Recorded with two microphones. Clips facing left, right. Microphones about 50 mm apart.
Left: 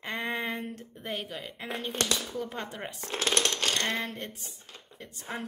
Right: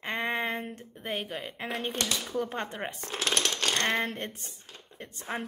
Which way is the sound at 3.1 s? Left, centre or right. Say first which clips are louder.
Left 2 dB; centre.